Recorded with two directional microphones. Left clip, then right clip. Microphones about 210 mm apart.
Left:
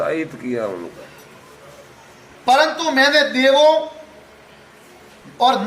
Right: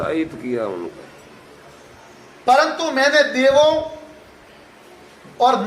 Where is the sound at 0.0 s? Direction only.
Centre (ahead or behind).